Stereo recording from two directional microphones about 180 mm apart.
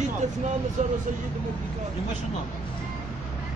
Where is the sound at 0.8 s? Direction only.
45° right (ahead or behind).